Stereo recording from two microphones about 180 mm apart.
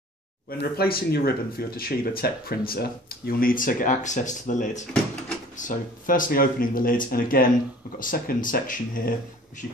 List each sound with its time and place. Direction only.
0.5 s speech: 55° left (ahead or behind)